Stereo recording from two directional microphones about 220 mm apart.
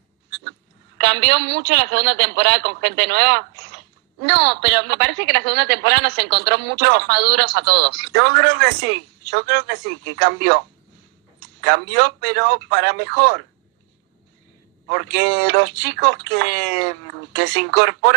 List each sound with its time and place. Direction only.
0.3 s a man's voice: 45° right (ahead or behind)
11.6 s a man's voice: 50° right (ahead or behind)
14.9 s a man's voice: 50° right (ahead or behind)